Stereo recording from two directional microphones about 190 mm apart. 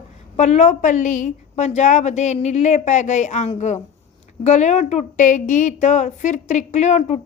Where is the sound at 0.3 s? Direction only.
35° left (ahead or behind).